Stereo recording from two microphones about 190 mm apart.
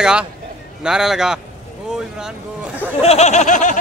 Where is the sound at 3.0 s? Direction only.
35° left (ahead or behind).